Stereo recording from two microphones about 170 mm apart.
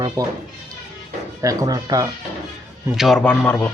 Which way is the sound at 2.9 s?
Centre (ahead or behind).